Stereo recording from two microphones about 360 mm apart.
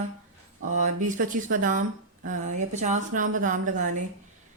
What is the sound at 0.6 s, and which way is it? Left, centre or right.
Speech, right.